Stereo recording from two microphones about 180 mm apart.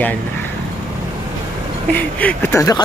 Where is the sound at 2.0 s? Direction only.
10° left (ahead or behind).